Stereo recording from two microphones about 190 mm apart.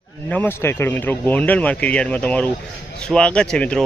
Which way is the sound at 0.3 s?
10° left (ahead or behind).